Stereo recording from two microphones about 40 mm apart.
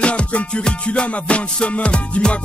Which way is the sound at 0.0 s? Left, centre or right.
Left.